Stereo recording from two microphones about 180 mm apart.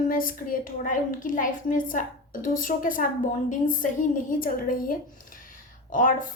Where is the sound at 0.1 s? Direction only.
50° left (ahead or behind).